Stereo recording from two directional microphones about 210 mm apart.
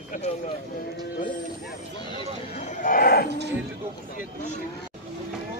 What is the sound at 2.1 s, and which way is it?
Speech, 35° left (ahead or behind).